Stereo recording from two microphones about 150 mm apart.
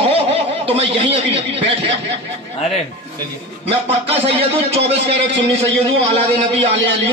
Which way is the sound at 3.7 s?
40° right (ahead or behind).